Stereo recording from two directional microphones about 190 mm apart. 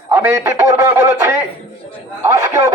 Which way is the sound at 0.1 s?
15° right (ahead or behind).